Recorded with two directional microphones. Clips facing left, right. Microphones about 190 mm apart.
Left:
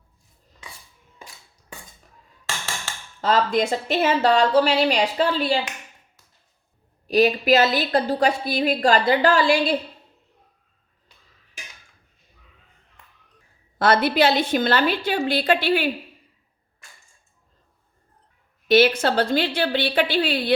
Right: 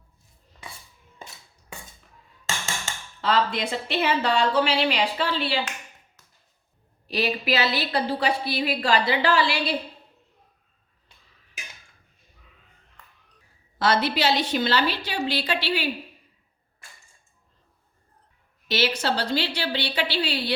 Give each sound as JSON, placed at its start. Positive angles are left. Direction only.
{"t": 3.2, "sound": "a woman's voice", "side_deg": 45}
{"t": 7.1, "sound": "a woman's voice", "side_deg": 45}
{"t": 13.7, "sound": "a woman's voice", "side_deg": 55}
{"t": 18.7, "sound": "a woman's voice", "side_deg": 55}